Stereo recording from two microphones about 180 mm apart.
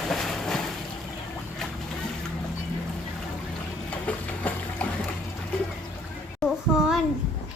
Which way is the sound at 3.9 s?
10° left (ahead or behind).